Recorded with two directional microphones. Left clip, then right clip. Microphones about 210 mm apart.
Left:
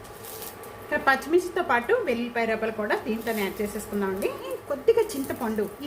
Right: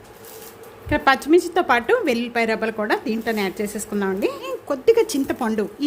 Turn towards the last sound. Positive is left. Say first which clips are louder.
# right 6 dB
turn(degrees=-55)  # may be behind; listen again after turning